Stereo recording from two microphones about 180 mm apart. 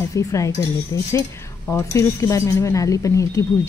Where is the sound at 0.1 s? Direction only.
15° left (ahead or behind).